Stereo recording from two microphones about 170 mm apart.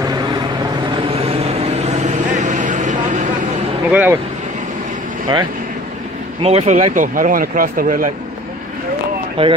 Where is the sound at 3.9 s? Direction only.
10° right (ahead or behind).